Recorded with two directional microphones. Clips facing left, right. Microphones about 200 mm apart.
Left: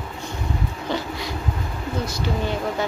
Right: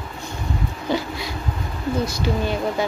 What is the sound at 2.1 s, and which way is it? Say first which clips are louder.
Speech: right 2 dB; 10° right (ahead or behind).